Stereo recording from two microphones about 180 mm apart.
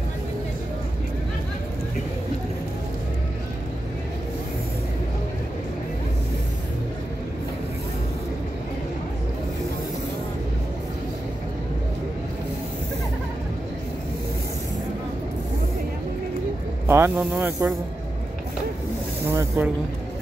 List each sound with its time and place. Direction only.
16.8 s speech: 15° right (ahead or behind)
19.2 s speech: 15° right (ahead or behind)